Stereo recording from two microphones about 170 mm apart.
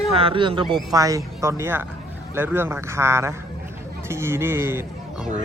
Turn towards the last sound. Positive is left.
turn(degrees=-15)  # may be behind; listen again after turning